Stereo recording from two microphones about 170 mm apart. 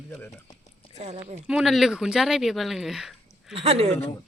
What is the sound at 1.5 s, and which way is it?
Speech, 5° right (ahead or behind).